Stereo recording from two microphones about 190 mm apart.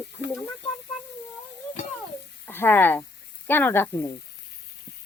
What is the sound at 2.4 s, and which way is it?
Speech, 10° left (ahead or behind).